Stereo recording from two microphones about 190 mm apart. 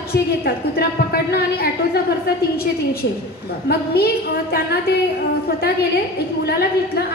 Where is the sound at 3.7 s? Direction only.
55° left (ahead or behind).